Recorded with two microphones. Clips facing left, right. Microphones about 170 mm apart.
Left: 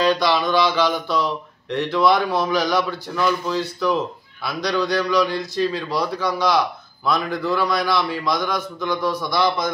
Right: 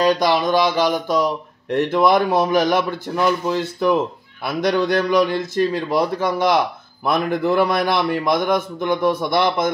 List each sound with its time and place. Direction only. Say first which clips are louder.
0.2 s a man's voice: right 2 dB; 45° right (ahead or behind)